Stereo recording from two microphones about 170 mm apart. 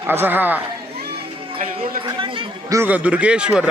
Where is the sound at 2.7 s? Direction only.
10° right (ahead or behind).